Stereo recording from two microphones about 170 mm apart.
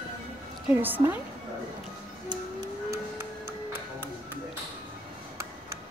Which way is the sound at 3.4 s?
60° right (ahead or behind).